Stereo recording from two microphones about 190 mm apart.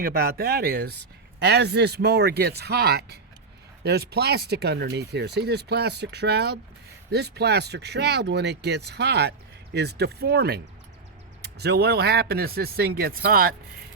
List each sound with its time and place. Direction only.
0.0 s speech: 55° right (ahead or behind)